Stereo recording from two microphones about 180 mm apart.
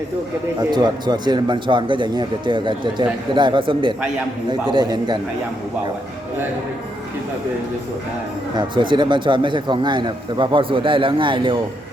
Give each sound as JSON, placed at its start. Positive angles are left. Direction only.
{"t": 0.7, "sound": "speech", "side_deg": -25}
{"t": 8.5, "sound": "speech", "side_deg": -25}